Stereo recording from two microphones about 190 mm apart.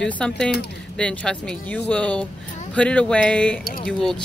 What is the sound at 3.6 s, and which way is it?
Speech, 50° left (ahead or behind).